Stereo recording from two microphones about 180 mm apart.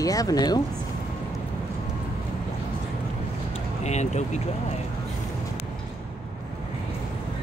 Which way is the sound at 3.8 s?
40° left (ahead or behind).